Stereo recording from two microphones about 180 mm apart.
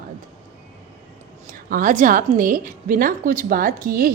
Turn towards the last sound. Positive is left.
turn(degrees=-50)  # may be behind; listen again after turning